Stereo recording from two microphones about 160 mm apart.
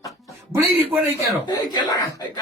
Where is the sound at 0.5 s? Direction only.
15° right (ahead or behind).